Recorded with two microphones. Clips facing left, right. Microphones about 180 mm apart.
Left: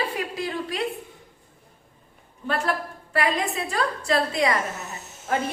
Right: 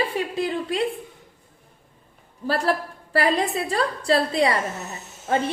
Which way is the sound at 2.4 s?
35° right (ahead or behind).